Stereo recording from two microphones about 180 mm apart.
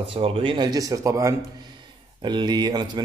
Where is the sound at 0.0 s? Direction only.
30° right (ahead or behind).